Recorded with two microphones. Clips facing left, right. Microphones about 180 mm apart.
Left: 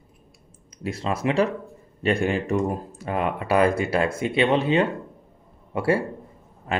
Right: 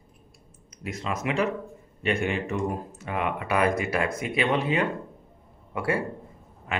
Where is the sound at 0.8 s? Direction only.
30° left (ahead or behind).